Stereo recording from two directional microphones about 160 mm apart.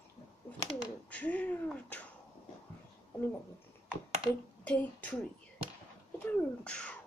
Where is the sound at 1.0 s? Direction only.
10° left (ahead or behind).